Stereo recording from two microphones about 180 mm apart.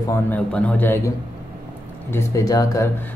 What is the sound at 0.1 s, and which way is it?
Speech, 10° left (ahead or behind).